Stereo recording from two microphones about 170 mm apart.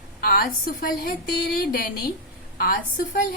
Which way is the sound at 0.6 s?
60° left (ahead or behind).